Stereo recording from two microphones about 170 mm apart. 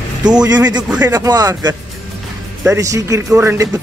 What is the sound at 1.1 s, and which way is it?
Speech, 20° right (ahead or behind).